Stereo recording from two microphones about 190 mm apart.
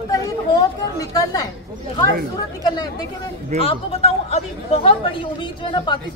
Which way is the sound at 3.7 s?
35° left (ahead or behind).